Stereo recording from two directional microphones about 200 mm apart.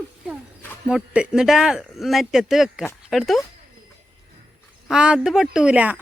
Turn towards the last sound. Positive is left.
turn(degrees=-5)  # may be behind; listen again after turning